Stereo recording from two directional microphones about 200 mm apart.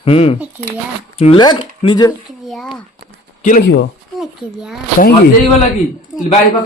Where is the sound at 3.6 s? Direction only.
55° left (ahead or behind).